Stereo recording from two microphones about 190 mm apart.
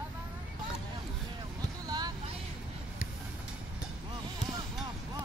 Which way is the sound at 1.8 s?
20° right (ahead or behind).